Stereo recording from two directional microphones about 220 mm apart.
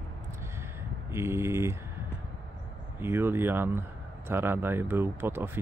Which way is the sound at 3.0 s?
10° right (ahead or behind).